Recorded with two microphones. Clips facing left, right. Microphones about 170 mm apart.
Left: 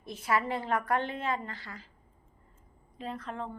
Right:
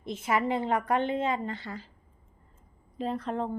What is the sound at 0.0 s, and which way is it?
A woman's voice, 20° right (ahead or behind).